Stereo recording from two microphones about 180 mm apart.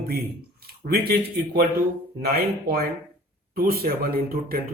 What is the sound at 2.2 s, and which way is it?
Speech, 55° right (ahead or behind).